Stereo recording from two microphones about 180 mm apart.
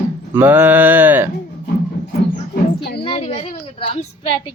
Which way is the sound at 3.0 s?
35° left (ahead or behind).